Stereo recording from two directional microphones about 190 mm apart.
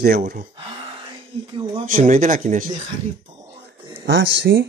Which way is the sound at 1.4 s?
25° right (ahead or behind).